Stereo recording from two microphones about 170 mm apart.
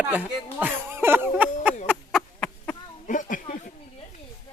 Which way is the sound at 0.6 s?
15° right (ahead or behind).